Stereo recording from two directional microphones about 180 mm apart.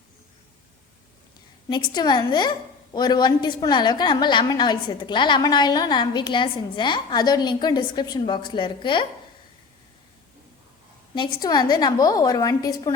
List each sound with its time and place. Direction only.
1.7 s a woman's voice: 25° left (ahead or behind)
11.1 s a woman's voice: 25° left (ahead or behind)